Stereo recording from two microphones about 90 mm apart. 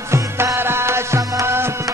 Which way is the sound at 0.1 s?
30° right (ahead or behind).